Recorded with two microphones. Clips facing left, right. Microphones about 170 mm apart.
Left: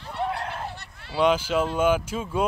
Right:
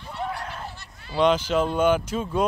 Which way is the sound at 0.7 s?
60° left (ahead or behind).